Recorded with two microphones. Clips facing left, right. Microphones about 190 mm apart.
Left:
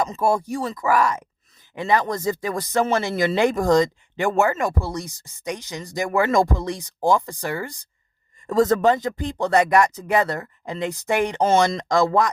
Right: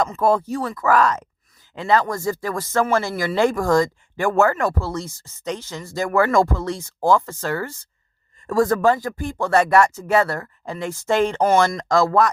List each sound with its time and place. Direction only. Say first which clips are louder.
0.0 s speech: right 2 dB; 10° left (ahead or behind)